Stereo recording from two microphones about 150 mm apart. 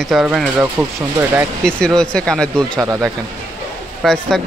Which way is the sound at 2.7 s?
20° right (ahead or behind).